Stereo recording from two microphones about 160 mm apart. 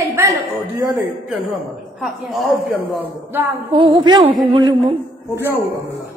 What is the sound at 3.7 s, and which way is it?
Speech, 30° right (ahead or behind).